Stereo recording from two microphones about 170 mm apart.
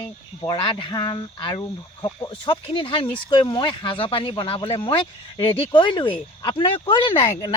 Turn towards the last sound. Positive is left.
turn(degrees=30)  # may be behind; listen again after turning